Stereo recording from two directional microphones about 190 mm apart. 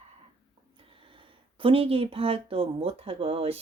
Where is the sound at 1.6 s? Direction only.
30° right (ahead or behind).